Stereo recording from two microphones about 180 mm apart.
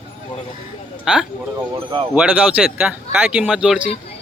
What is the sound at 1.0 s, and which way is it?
Speech, 5° right (ahead or behind).